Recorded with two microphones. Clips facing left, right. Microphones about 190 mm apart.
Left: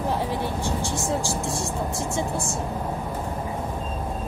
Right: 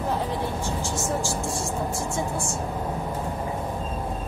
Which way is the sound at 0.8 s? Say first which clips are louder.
Left 1 dB; 15° left (ahead or behind).